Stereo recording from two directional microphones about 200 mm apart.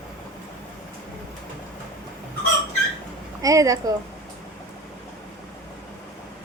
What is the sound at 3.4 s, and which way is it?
Speech, 15° right (ahead or behind).